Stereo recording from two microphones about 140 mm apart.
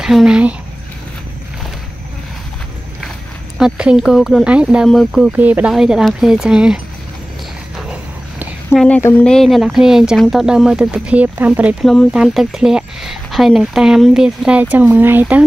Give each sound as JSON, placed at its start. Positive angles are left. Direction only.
{"t": 0.0, "sound": "speech", "side_deg": -5}
{"t": 3.5, "sound": "speech", "side_deg": -5}
{"t": 8.7, "sound": "speech", "side_deg": 10}
{"t": 11.8, "sound": "speech", "side_deg": 0}